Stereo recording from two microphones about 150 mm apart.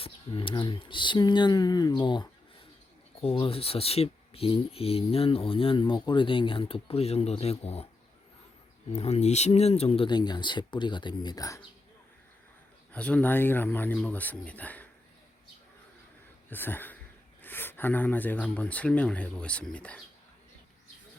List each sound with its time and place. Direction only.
0.0 s speech: 35° left (ahead or behind)
8.9 s speech: 45° left (ahead or behind); by 11.6 s 25° left (ahead or behind)
12.9 s speech: 10° left (ahead or behind)
16.5 s speech: 15° left (ahead or behind)